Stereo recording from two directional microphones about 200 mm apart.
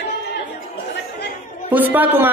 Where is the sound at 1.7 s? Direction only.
10° right (ahead or behind).